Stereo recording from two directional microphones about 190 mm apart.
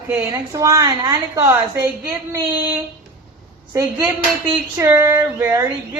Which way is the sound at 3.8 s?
15° right (ahead or behind).